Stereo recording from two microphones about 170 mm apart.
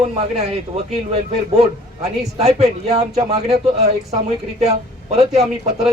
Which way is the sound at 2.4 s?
40° right (ahead or behind).